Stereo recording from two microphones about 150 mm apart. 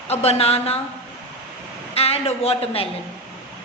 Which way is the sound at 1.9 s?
40° left (ahead or behind).